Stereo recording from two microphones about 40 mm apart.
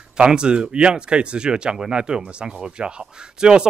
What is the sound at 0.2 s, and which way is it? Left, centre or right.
Speech, right.